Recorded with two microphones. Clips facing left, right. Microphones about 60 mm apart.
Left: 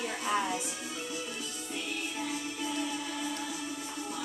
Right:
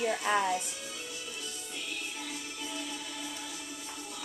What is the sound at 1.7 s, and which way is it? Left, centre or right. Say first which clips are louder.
Music: left 5 dB; left.